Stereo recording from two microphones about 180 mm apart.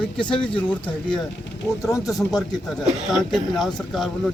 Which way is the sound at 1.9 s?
15° left (ahead or behind).